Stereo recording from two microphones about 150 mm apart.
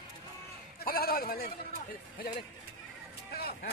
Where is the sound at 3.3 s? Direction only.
90° left.